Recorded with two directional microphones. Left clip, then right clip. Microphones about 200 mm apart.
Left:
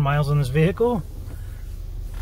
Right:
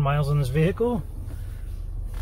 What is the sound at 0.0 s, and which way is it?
Speech, 10° left (ahead or behind).